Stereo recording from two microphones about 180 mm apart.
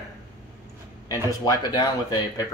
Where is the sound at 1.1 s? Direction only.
20° left (ahead or behind).